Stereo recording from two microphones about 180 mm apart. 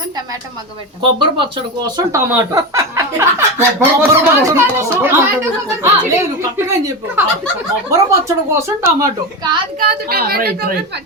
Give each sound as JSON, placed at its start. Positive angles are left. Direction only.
{"t": 1.2, "sound": "speech", "side_deg": -30}
{"t": 10.1, "sound": "a woman's voice", "side_deg": -55}